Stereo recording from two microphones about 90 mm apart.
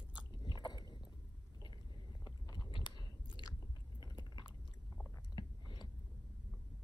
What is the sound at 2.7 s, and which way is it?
Chewing, 60° left (ahead or behind).